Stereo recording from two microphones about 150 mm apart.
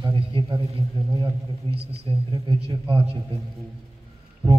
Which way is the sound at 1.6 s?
35° right (ahead or behind).